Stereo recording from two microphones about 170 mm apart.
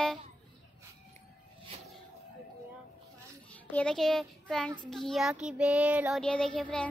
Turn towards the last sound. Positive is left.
turn(degrees=5)  # may be behind; listen again after turning